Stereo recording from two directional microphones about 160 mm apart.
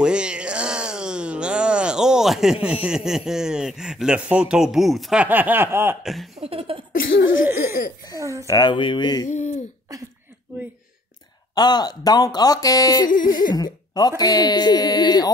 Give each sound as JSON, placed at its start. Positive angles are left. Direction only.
{"t": 0.0, "sound": "speech", "side_deg": -5}
{"t": 6.4, "sound": "laughter", "side_deg": -35}
{"t": 6.9, "sound": "cough", "side_deg": 65}
{"t": 7.4, "sound": "laughter", "side_deg": -15}
{"t": 8.2, "sound": "speech", "side_deg": -20}
{"t": 8.5, "sound": "speech", "side_deg": 25}
{"t": 9.3, "sound": "speech", "side_deg": 50}
{"t": 11.5, "sound": "speech", "side_deg": 25}